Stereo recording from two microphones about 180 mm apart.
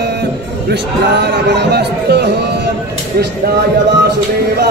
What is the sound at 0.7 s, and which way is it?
Music, 70° right (ahead or behind).